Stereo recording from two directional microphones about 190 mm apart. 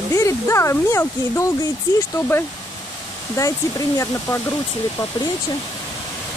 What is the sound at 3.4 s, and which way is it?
Speech, 15° left (ahead or behind).